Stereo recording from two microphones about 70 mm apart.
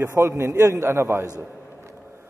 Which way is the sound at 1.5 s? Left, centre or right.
Left.